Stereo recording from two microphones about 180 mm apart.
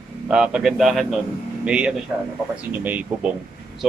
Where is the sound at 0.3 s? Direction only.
5° right (ahead or behind).